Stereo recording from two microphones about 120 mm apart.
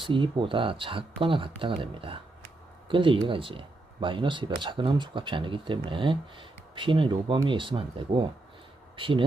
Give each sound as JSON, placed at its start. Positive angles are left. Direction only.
{"t": 0.0, "sound": "speech", "side_deg": -45}